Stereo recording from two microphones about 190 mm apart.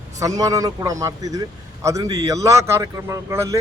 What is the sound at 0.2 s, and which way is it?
A man's voice, 20° right (ahead or behind).